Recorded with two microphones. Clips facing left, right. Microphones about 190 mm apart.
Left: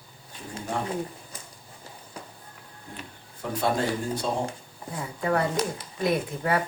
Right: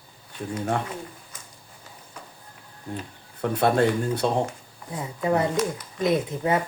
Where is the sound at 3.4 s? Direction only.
65° right (ahead or behind).